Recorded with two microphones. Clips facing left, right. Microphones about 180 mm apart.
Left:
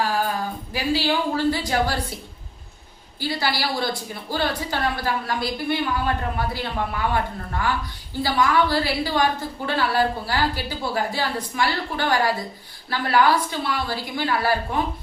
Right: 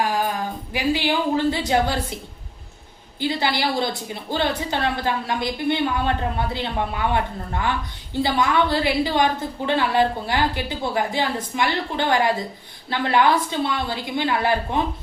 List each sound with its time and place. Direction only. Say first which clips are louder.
0.7 s a woman's voice: right 1 dB; 20° right (ahead or behind)
3.2 s a woman's voice: right 3 dB; 20° right (ahead or behind)
8.2 s a woman's voice: even; 20° right (ahead or behind)